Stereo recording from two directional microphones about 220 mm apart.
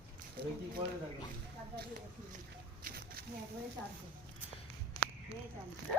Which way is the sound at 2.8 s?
45° right (ahead or behind).